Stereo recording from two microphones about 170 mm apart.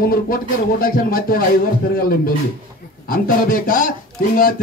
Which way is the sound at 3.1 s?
55° left (ahead or behind).